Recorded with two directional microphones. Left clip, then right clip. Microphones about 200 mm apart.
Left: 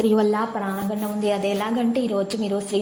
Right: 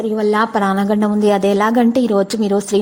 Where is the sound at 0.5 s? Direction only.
40° right (ahead or behind).